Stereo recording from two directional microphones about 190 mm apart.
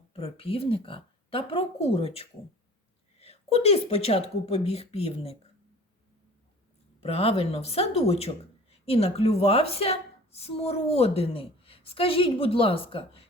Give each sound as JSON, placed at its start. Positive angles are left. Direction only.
{"t": 0.1, "sound": "a woman's voice", "side_deg": 30}
{"t": 7.0, "sound": "a woman's voice", "side_deg": 30}